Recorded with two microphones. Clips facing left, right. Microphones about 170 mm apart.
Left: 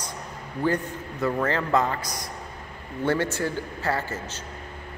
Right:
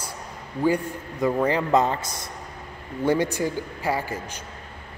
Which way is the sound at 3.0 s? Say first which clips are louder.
Right 2 dB; 15° right (ahead or behind).